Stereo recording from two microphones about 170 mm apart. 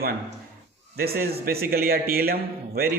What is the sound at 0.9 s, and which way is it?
A man's voice, 65° right (ahead or behind).